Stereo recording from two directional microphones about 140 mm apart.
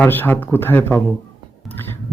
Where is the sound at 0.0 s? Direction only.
15° left (ahead or behind).